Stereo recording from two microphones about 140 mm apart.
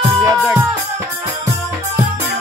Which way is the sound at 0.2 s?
25° right (ahead or behind).